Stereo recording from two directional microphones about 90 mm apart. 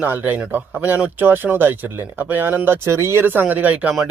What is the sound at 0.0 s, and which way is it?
Speech, 20° right (ahead or behind).